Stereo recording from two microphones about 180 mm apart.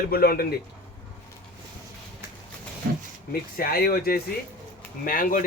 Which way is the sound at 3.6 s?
55° left (ahead or behind).